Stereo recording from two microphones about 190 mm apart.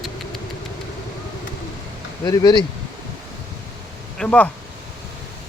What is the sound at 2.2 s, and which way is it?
Speech, 20° left (ahead or behind).